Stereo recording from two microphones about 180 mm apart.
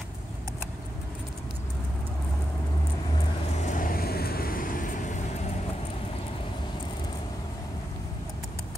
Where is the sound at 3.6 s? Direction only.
45° left (ahead or behind).